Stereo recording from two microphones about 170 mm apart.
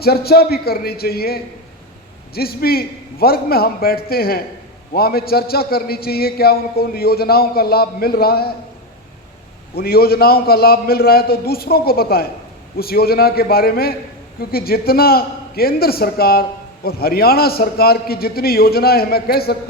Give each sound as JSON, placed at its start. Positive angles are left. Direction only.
{"t": 0.0, "sound": "a man's voice", "side_deg": 65}
{"t": 9.7, "sound": "a man's voice", "side_deg": 65}